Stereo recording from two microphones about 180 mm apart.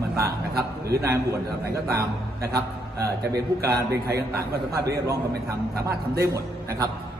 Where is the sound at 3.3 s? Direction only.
60° right (ahead or behind).